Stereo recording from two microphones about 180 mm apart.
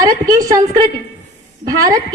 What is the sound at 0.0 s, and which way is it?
A woman's voice, 20° right (ahead or behind).